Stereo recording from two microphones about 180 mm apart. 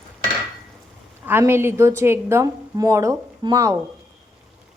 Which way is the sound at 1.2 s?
10° right (ahead or behind).